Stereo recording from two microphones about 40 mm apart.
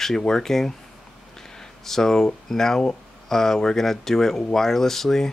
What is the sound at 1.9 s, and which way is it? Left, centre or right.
Speech, centre.